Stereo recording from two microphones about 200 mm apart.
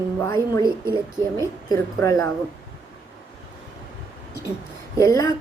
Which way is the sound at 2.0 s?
15° left (ahead or behind).